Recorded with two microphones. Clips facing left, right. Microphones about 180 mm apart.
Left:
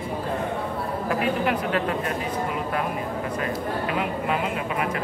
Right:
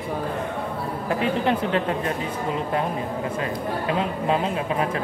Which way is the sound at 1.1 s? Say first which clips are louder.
Right 2 dB; 25° right (ahead or behind).